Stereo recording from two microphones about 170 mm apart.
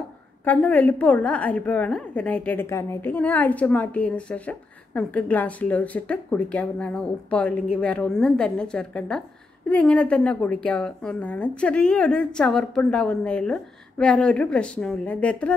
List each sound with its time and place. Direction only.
0.5 s a woman's voice: 10° left (ahead or behind)